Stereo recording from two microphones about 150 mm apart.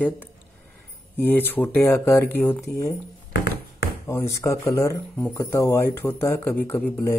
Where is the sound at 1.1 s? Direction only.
10° left (ahead or behind).